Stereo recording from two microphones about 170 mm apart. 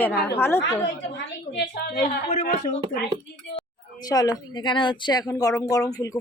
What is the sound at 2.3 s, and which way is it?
Speech, 45° left (ahead or behind).